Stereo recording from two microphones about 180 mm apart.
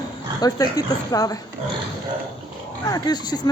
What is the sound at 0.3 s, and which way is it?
Speech, 20° left (ahead or behind).